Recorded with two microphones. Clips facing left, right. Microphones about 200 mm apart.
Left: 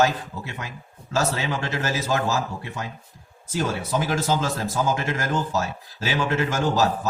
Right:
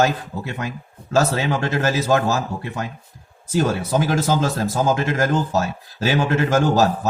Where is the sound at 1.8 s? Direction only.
50° right (ahead or behind).